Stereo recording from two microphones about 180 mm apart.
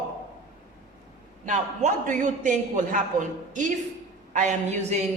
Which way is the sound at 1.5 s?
45° right (ahead or behind).